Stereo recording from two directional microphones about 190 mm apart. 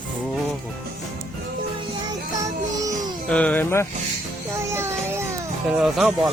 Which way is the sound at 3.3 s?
5° left (ahead or behind).